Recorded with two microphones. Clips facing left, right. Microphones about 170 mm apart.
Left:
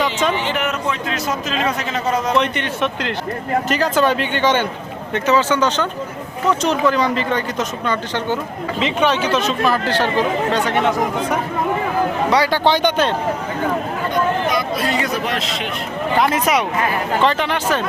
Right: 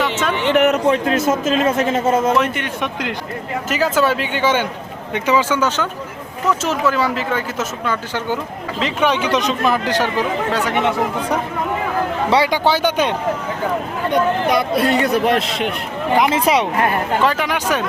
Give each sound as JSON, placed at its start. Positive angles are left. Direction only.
{"t": 0.0, "sound": "a sound", "side_deg": 0}
{"t": 0.3, "sound": "a man's voice", "side_deg": -60}
{"t": 2.4, "sound": "speech", "side_deg": -10}
{"t": 12.5, "sound": "speech", "side_deg": -10}
{"t": 14.1, "sound": "speech", "side_deg": -65}
{"t": 16.3, "sound": "speech", "side_deg": -30}
{"t": 16.7, "sound": "speech", "side_deg": -60}
{"t": 17.2, "sound": "speech", "side_deg": -10}